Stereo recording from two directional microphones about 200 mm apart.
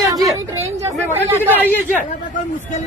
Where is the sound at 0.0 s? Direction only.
15° right (ahead or behind).